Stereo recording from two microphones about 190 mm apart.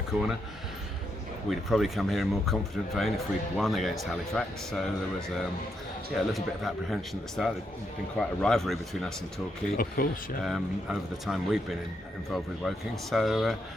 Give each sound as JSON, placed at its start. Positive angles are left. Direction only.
{"t": 0.1, "sound": "speech", "side_deg": -5}
{"t": 1.5, "sound": "speech", "side_deg": 0}
{"t": 6.1, "sound": "speech", "side_deg": 0}
{"t": 9.7, "sound": "speech", "side_deg": 50}
{"t": 10.4, "sound": "speech", "side_deg": 0}